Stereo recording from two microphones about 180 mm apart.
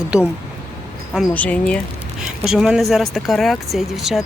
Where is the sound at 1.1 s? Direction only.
10° left (ahead or behind).